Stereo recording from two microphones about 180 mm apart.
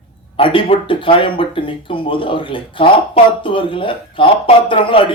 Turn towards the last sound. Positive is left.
turn(degrees=30)  # may be behind; listen again after turning